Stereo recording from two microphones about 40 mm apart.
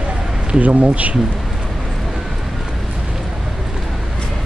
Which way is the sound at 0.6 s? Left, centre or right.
Right.